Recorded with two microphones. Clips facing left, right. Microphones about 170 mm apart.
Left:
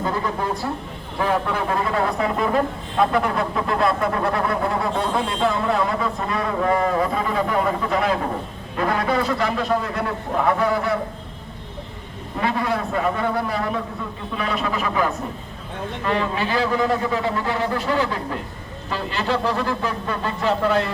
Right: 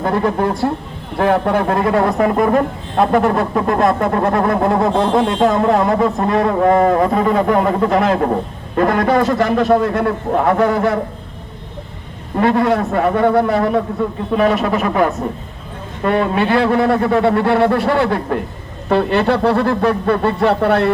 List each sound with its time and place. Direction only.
0.0 s a man's voice: 60° right (ahead or behind)
12.4 s a man's voice: 50° right (ahead or behind)